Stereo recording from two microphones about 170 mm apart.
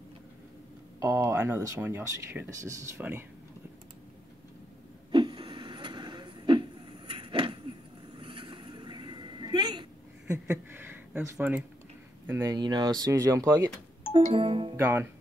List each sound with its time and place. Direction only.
0.9 s speech: 20° right (ahead or behind)
5.1 s vehicle: 25° right (ahead or behind)
8.2 s a sound: 30° right (ahead or behind)
10.2 s a sound: 10° right (ahead or behind)
11.3 s speech: 10° right (ahead or behind)
12.3 s speech: 20° right (ahead or behind)
14.3 s speech: 35° right (ahead or behind)
14.8 s speech: 10° right (ahead or behind)